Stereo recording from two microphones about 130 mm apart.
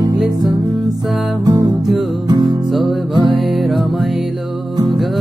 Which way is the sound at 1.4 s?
30° right (ahead or behind).